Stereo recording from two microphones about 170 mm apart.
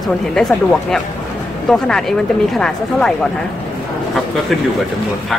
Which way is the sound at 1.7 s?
Centre (ahead or behind).